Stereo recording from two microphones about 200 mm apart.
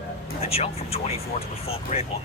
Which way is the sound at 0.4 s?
30° left (ahead or behind).